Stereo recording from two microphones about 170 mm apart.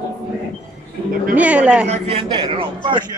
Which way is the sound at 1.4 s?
5° right (ahead or behind).